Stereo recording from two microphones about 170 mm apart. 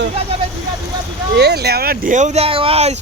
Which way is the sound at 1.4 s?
75° right (ahead or behind).